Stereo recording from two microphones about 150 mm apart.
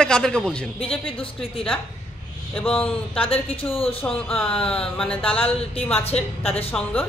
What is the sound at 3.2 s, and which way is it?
Speech, 40° left (ahead or behind).